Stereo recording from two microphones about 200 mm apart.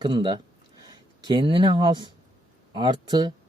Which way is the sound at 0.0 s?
25° right (ahead or behind).